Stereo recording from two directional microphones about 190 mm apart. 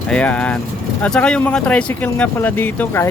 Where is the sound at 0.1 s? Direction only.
5° left (ahead or behind).